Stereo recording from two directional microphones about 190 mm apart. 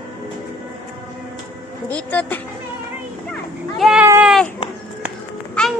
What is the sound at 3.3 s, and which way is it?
Children playing, centre (ahead or behind).